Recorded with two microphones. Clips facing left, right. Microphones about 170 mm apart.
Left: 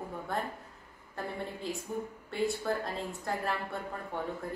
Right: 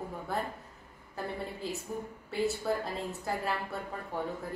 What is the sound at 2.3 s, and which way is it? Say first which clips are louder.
A woman's voice: right 1 dB; centre (ahead or behind).